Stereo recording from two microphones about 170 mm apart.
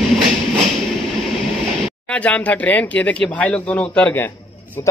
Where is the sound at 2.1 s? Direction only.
10° left (ahead or behind).